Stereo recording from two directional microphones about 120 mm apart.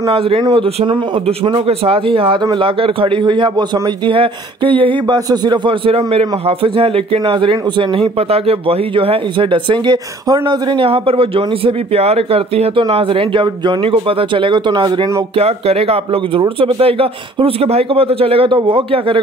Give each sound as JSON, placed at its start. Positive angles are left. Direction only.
{"t": 0.1, "sound": "a man's voice", "side_deg": -50}
{"t": 4.1, "sound": "speech", "side_deg": -45}
{"t": 15.3, "sound": "speech", "side_deg": -55}